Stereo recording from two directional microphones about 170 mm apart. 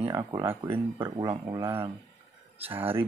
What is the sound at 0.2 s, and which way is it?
Speech, 25° right (ahead or behind).